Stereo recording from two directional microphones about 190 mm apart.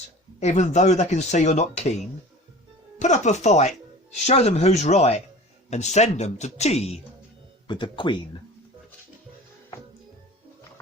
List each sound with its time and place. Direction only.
0.3 s speech: 35° left (ahead or behind)
3.0 s speech: 40° left (ahead or behind)